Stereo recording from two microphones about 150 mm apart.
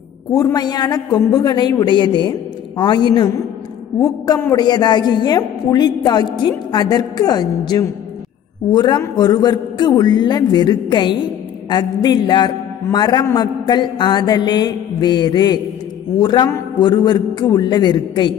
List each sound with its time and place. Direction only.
0.3 s a woman's voice: 25° left (ahead or behind)
4.6 s a woman's voice: 25° left (ahead or behind)